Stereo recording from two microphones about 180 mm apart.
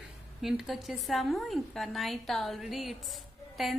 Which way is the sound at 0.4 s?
Centre (ahead or behind).